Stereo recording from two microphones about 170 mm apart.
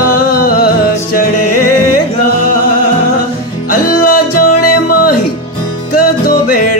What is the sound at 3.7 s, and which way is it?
Music, 60° left (ahead or behind).